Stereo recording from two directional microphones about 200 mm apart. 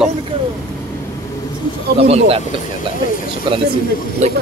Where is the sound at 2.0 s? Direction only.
30° right (ahead or behind).